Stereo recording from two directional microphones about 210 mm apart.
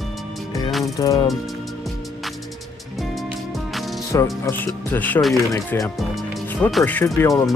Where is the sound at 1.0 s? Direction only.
15° left (ahead or behind).